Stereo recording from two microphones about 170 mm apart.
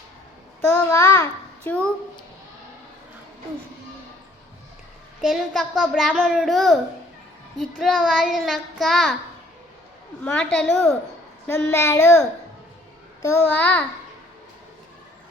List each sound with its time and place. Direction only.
0.7 s child singing: 15° left (ahead or behind)
5.2 s a child's voice: centre (ahead or behind)
10.2 s a child's voice: 5° left (ahead or behind)
11.4 s a child's voice: 15° left (ahead or behind)
13.2 s a child's voice: 10° left (ahead or behind)